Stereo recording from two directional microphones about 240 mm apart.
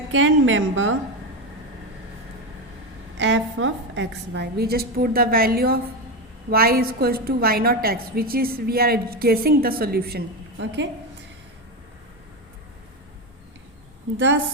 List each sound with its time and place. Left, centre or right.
0.1 s a woman's voice: right
3.2 s a woman's voice: right